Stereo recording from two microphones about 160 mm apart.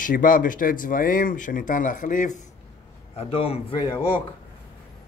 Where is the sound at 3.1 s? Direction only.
35° left (ahead or behind).